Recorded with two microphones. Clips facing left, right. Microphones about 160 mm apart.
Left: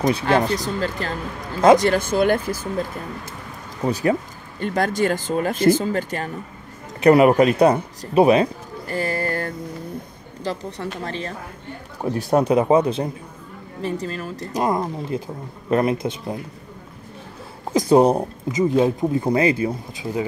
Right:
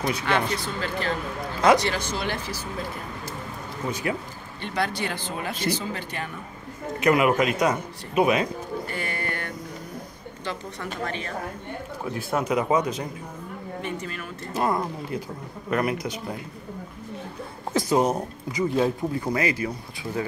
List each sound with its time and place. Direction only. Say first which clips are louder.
0.1 s speech: left 6 dB; 35° left (ahead or behind); by 2.7 s 50° left (ahead or behind)
3.8 s a man's voice: left 8 dB; 35° left (ahead or behind)
14.5 s speech: left 3 dB; 20° left (ahead or behind)
17.7 s speech: left 7 dB; 30° left (ahead or behind)
18.5 s speech: left 5 dB; 20° left (ahead or behind)